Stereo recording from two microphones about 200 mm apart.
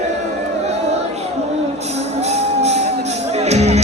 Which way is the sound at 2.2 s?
30° right (ahead or behind).